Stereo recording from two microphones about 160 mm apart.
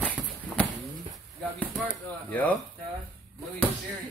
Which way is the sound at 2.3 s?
10° left (ahead or behind).